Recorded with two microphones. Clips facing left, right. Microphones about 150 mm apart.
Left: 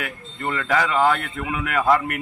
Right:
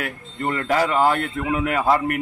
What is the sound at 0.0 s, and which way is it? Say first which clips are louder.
A man's voice: right 2 dB; 35° right (ahead or behind).